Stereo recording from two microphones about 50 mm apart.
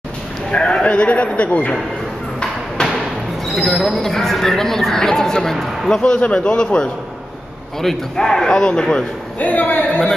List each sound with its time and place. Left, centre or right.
0.5 s a man's voice: centre
3.5 s speech: centre
6.0 s a man's voice: left
7.8 s speech: centre
9.4 s a man's voice: left